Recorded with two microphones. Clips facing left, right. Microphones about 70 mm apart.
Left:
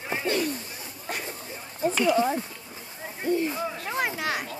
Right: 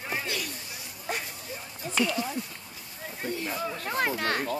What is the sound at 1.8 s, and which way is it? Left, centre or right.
Speech, left.